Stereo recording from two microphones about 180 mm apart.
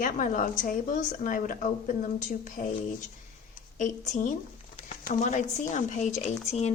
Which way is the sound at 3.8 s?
45° left (ahead or behind).